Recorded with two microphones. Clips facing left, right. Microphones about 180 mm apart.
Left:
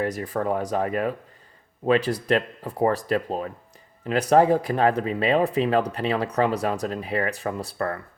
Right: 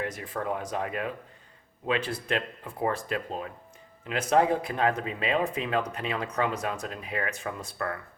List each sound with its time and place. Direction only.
0.0 s speech: 40° left (ahead or behind)